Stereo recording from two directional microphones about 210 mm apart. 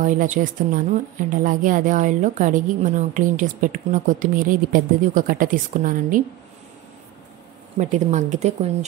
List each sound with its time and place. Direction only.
0.0 s a woman's voice: 40° right (ahead or behind)
7.7 s a woman's voice: 35° right (ahead or behind)